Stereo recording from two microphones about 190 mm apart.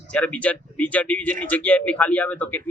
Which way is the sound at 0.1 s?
5° left (ahead or behind).